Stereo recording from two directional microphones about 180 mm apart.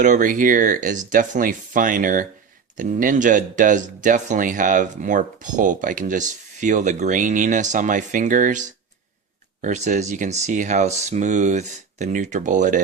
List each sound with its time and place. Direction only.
0.0 s speech: 45° right (ahead or behind)